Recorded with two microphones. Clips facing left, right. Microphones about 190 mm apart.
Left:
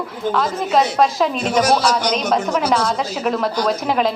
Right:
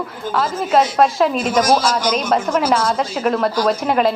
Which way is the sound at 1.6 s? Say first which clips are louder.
Even; 65° left (ahead or behind).